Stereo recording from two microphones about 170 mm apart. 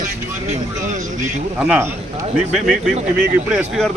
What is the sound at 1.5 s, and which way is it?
Speech, 10° right (ahead or behind).